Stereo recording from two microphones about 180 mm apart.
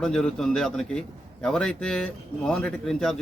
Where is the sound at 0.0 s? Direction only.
5° left (ahead or behind).